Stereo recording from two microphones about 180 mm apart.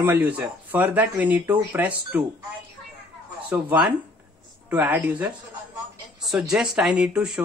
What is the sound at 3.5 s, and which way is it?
Speech, 10° right (ahead or behind).